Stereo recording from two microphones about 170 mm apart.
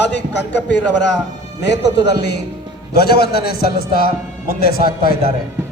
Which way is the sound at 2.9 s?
65° left (ahead or behind).